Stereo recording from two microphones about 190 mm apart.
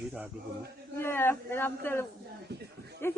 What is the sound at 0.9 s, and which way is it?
Speech, 10° left (ahead or behind).